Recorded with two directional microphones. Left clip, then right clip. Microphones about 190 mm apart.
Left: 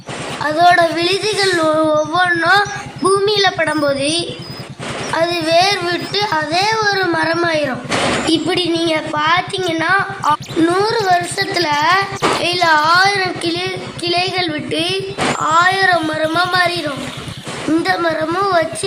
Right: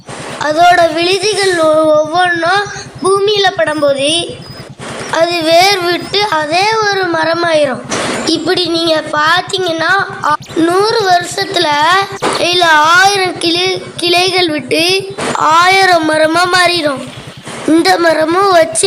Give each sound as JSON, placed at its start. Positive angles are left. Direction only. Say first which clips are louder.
{"t": 0.4, "sound": "child singing", "louder": "right 4 dB", "side_deg": -25}
{"t": 5.1, "sound": "a woman's voice", "louder": "right 5 dB", "side_deg": -30}
{"t": 15.4, "sound": "speech", "louder": "right 6 dB", "side_deg": -45}